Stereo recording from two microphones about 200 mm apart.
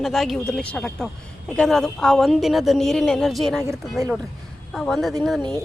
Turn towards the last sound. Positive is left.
turn(degrees=0)  # may be behind; listen again after turning